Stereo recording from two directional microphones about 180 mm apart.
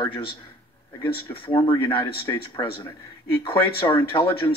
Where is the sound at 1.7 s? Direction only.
30° left (ahead or behind).